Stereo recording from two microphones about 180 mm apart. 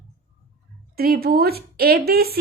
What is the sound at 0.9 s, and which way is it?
A woman's voice, 60° right (ahead or behind).